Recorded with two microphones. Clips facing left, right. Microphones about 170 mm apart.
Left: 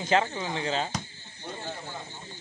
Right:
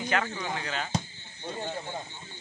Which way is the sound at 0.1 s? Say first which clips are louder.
Left 6 dB; 25° left (ahead or behind).